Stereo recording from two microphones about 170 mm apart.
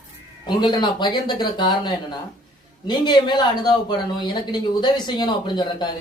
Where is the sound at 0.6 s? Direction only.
25° left (ahead or behind).